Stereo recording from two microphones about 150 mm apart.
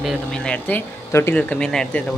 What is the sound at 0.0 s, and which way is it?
Speech, 5° left (ahead or behind).